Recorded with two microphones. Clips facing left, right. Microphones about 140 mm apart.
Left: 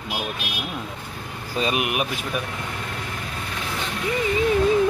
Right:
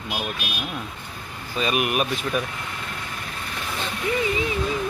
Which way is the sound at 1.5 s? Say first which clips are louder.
Even; 25° left (ahead or behind).